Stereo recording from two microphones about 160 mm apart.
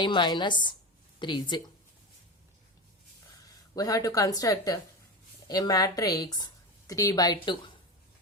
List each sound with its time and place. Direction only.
0.0 s speech: 30° left (ahead or behind)
3.8 s a woman's voice: 20° left (ahead or behind)